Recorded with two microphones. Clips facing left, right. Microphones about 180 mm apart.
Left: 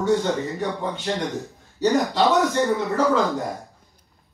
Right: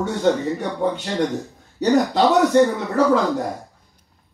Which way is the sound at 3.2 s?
Centre (ahead or behind).